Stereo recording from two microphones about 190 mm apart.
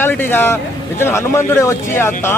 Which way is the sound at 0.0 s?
10° left (ahead or behind).